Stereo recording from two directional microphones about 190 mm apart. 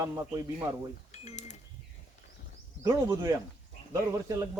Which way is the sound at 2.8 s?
20° right (ahead or behind).